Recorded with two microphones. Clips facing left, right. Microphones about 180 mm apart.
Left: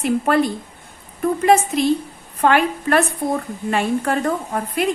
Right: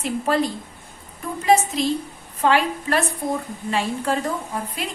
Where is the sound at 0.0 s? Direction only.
60° left (ahead or behind).